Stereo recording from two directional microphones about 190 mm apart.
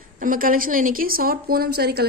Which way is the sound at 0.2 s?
45° right (ahead or behind).